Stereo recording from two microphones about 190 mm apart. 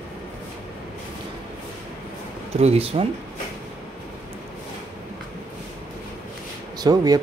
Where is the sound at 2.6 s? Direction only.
30° right (ahead or behind).